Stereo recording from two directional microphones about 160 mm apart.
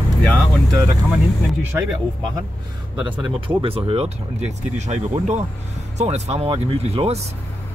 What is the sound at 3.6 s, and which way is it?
Speech, 35° right (ahead or behind).